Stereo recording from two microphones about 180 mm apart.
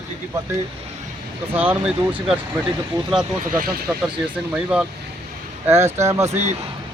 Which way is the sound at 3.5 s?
50° right (ahead or behind).